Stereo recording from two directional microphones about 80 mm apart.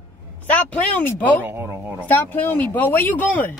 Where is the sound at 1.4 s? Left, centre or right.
Right.